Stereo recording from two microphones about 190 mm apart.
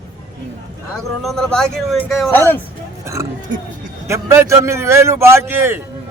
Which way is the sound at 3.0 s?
15° right (ahead or behind).